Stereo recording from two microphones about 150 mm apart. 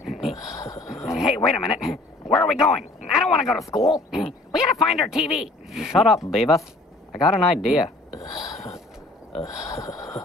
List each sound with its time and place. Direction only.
0.0 s a sound: centre (ahead or behind)
0.7 s speech: 5° right (ahead or behind)
3.7 s speech: 20° left (ahead or behind)
4.1 s speech: centre (ahead or behind)